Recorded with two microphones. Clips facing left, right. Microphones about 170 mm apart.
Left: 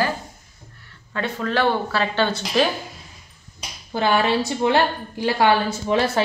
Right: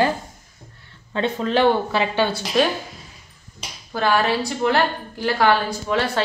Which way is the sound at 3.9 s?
20° left (ahead or behind).